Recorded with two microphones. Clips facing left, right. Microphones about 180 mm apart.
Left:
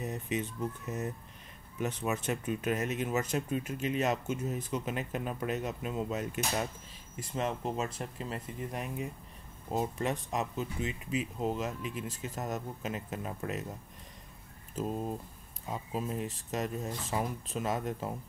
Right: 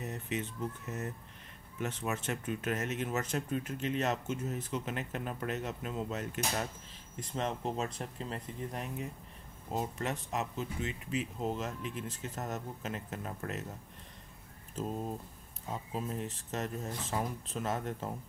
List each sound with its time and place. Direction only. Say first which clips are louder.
0.0 s speech: left 3 dB; 15° left (ahead or behind)
14.8 s speech: left 2 dB; 10° left (ahead or behind)